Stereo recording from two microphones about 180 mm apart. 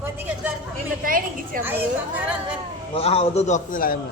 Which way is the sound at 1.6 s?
10° right (ahead or behind).